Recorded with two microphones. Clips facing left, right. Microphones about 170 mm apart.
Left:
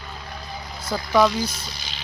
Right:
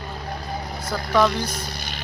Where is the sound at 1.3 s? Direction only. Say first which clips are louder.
Even; 60° right (ahead or behind).